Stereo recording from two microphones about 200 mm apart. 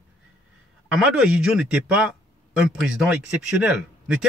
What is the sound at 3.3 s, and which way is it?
Speech, 5° right (ahead or behind).